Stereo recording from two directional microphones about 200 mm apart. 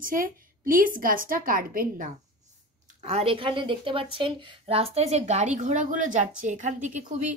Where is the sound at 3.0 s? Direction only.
30° right (ahead or behind).